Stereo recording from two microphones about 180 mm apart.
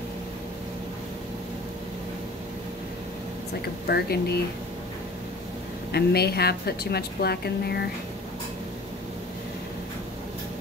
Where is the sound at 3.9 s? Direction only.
60° left (ahead or behind).